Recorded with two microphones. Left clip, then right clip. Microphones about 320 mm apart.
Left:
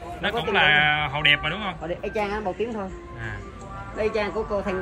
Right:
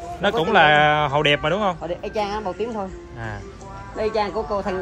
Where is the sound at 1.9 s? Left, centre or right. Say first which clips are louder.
Right 2 dB; right.